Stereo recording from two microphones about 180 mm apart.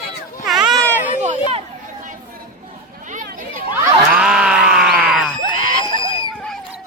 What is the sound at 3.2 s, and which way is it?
Children playing, 50° right (ahead or behind).